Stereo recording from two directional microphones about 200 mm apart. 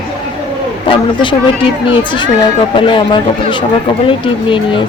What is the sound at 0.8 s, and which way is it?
Speech, 25° left (ahead or behind).